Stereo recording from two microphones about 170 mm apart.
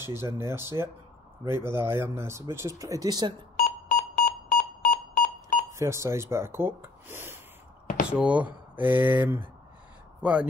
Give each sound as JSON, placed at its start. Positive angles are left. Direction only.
{"t": 0.0, "sound": "speech", "side_deg": -15}
{"t": 3.6, "sound": "beep", "side_deg": 50}
{"t": 5.7, "sound": "speech", "side_deg": -15}
{"t": 7.8, "sound": "a sound", "side_deg": 45}
{"t": 8.1, "sound": "speech", "side_deg": -5}